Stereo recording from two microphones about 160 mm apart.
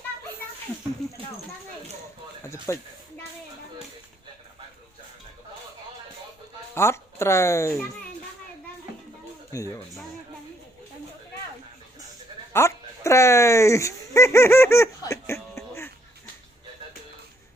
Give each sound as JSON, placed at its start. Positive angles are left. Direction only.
{"t": 2.4, "sound": "speech", "side_deg": 15}
{"t": 6.7, "sound": "speech", "side_deg": 15}
{"t": 9.5, "sound": "speech", "side_deg": 20}
{"t": 12.5, "sound": "speech", "side_deg": 15}